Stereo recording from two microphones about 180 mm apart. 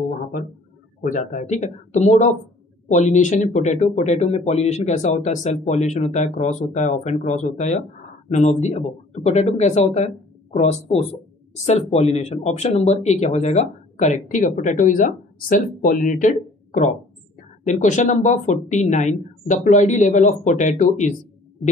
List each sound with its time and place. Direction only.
1.0 s speech: 45° left (ahead or behind)
17.6 s speech: 40° left (ahead or behind)